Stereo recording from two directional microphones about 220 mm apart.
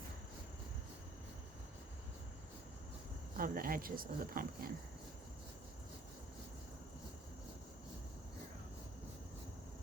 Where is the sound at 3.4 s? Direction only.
40° right (ahead or behind).